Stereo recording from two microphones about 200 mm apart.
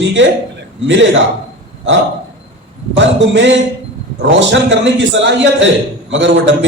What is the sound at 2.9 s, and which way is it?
A man's voice, 65° right (ahead or behind).